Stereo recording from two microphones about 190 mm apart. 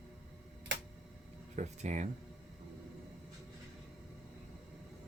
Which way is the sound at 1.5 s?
40° right (ahead or behind).